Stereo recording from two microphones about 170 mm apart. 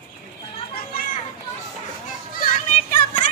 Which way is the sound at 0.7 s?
60° left (ahead or behind).